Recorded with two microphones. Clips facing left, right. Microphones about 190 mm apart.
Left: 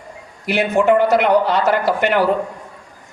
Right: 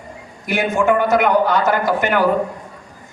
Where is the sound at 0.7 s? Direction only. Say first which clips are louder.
Left 2 dB; 30° left (ahead or behind).